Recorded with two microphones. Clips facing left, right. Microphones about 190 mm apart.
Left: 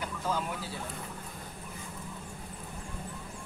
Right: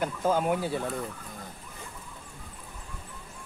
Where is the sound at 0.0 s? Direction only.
50° right (ahead or behind).